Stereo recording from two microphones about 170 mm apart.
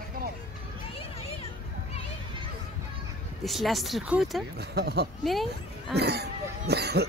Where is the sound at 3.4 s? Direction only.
Centre (ahead or behind).